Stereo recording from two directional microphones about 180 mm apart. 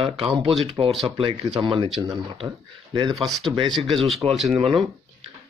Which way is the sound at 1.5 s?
30° right (ahead or behind).